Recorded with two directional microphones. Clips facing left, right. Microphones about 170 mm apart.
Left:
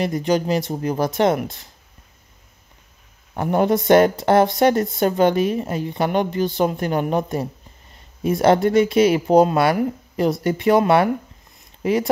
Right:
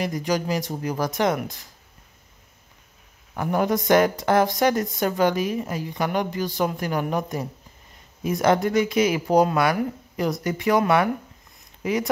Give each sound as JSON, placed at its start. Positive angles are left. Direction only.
{"t": 0.0, "sound": "speech", "side_deg": 25}
{"t": 3.3, "sound": "speech", "side_deg": 25}